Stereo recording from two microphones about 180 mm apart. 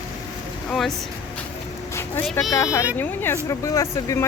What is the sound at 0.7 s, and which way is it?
Speech, centre (ahead or behind).